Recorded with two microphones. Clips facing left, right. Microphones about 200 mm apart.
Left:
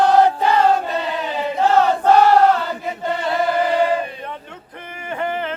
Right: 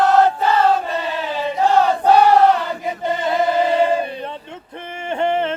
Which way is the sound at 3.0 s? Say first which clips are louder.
Right 2 dB; 20° right (ahead or behind).